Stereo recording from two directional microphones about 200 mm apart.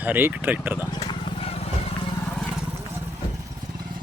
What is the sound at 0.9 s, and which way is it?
Vehicle, 25° left (ahead or behind).